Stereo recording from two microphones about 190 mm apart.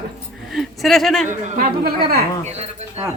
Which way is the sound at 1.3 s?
45° right (ahead or behind).